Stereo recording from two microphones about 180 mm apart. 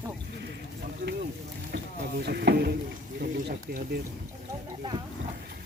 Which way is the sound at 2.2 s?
65° right (ahead or behind).